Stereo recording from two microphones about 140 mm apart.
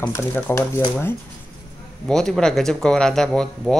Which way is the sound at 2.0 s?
5° left (ahead or behind).